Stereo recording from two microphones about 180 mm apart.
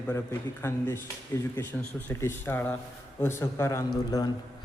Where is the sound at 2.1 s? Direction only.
15° left (ahead or behind).